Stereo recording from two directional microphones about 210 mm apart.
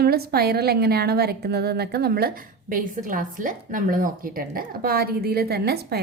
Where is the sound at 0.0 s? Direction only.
45° right (ahead or behind).